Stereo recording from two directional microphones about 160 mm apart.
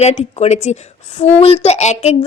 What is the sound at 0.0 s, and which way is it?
A woman's voice, 40° left (ahead or behind).